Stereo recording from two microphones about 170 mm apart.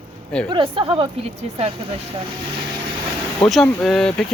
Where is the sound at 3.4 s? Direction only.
Centre (ahead or behind).